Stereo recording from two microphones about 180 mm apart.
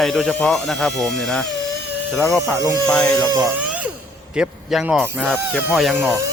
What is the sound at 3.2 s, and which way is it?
Speech, 20° right (ahead or behind).